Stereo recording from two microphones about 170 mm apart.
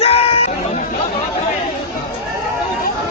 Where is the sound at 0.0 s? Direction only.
35° left (ahead or behind).